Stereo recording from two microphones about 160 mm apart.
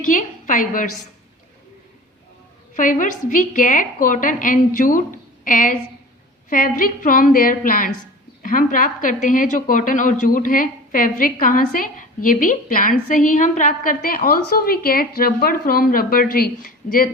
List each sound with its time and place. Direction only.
0.1 s a woman's voice: 55° left (ahead or behind)
2.7 s a woman's voice: 55° left (ahead or behind)